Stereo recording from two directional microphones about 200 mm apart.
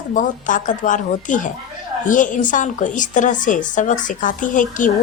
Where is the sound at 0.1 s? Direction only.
40° left (ahead or behind).